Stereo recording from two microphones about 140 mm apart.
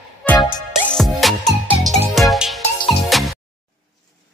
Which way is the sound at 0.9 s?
Centre (ahead or behind).